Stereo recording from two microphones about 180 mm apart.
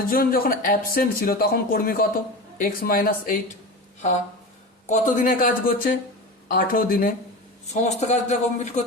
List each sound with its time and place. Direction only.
0.1 s speech: 55° left (ahead or behind)
4.9 s speech: 45° left (ahead or behind)
7.7 s a man's voice: 40° left (ahead or behind)